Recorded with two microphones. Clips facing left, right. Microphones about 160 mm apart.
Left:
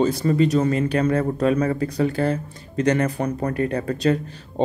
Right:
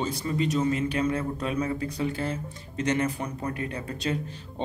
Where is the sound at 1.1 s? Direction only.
55° left (ahead or behind).